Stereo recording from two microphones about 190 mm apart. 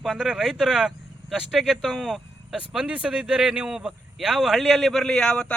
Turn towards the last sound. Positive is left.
turn(degrees=5)  # may be behind; listen again after turning